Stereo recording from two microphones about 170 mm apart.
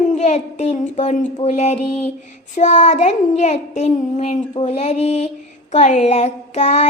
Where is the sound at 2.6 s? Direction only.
45° left (ahead or behind).